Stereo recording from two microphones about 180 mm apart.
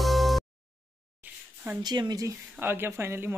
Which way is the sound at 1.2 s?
10° right (ahead or behind).